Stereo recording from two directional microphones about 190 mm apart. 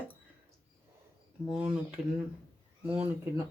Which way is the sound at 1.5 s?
10° right (ahead or behind).